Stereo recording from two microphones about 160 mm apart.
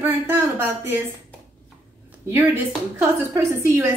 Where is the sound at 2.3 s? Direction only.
15° right (ahead or behind).